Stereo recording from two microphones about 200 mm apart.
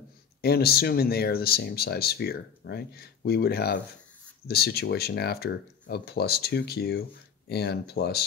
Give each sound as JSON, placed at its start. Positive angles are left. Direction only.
{"t": 0.4, "sound": "speech", "side_deg": 50}